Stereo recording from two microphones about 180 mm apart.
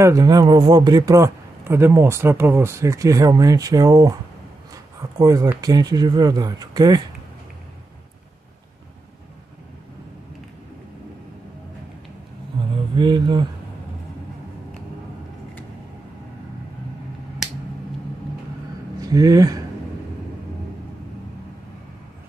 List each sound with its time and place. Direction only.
0.0 s speech: 20° right (ahead or behind)
5.2 s speech: 20° right (ahead or behind)
12.9 s speech: 25° right (ahead or behind)
18.9 s speech: 20° right (ahead or behind)